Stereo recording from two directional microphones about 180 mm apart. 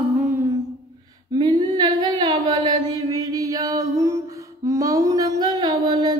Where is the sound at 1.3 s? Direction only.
25° right (ahead or behind).